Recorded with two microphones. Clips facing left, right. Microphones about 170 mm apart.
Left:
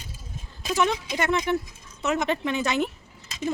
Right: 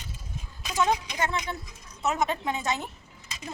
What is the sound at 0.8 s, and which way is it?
Speech, 85° left.